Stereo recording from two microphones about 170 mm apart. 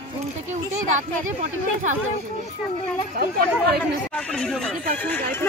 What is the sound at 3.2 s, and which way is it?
Speech, 60° right (ahead or behind).